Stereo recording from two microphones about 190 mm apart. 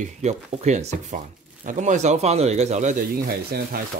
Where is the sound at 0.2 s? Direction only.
35° right (ahead or behind); by 3.8 s 50° right (ahead or behind).